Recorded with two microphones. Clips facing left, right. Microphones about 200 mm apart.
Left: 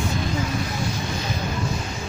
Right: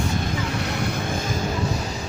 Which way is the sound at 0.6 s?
65° right (ahead or behind).